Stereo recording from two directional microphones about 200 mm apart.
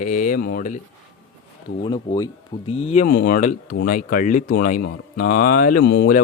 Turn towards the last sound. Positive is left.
turn(degrees=55)  # may be behind; listen again after turning